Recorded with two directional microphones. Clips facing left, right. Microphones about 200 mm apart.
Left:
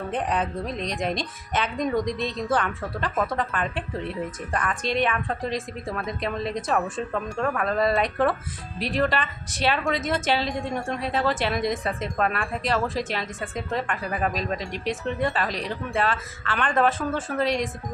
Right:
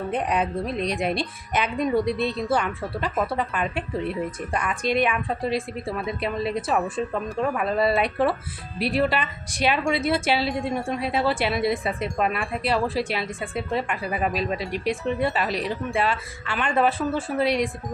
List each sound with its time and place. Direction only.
0.1 s speech: 10° right (ahead or behind)